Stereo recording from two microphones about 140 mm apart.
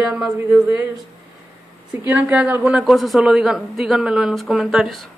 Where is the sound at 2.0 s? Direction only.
10° right (ahead or behind).